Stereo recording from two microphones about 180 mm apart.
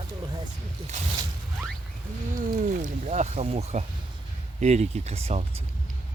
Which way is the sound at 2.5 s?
45° right (ahead or behind).